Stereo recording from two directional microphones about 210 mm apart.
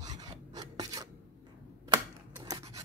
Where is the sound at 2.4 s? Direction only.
15° right (ahead or behind).